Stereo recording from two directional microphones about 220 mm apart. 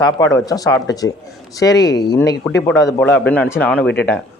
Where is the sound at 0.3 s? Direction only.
15° left (ahead or behind).